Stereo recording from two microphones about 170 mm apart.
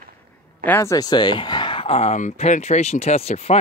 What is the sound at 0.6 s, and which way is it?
Speech, 15° left (ahead or behind).